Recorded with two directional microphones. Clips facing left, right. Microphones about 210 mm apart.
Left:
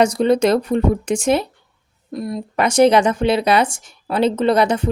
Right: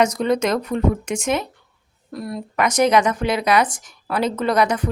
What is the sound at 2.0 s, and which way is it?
Speech, 20° left (ahead or behind).